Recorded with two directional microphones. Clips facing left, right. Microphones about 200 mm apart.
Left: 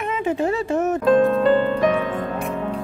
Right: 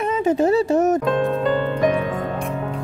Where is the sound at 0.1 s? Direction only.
40° right (ahead or behind).